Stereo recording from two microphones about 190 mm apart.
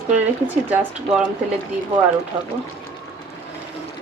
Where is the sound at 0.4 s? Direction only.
10° right (ahead or behind).